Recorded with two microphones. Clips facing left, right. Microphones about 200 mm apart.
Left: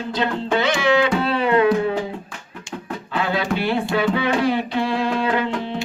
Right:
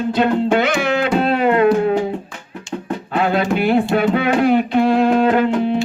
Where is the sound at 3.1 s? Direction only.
55° right (ahead or behind).